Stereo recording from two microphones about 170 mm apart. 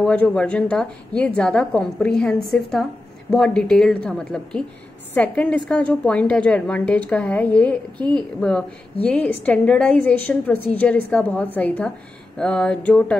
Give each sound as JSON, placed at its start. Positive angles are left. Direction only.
{"t": 0.0, "sound": "a woman's voice", "side_deg": 5}